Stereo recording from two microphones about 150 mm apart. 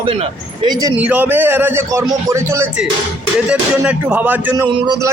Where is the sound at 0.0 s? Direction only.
40° right (ahead or behind).